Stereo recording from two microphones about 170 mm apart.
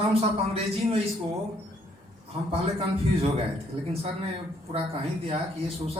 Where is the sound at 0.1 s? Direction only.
35° right (ahead or behind).